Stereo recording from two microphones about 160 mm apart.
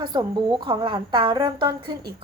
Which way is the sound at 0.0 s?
30° right (ahead or behind).